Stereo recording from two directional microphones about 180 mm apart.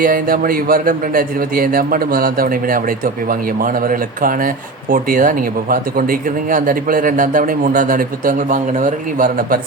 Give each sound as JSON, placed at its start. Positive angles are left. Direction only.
{"t": 0.0, "sound": "speech", "side_deg": -50}